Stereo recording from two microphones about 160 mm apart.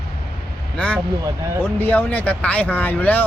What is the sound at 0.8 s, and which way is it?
Speech, 5° left (ahead or behind).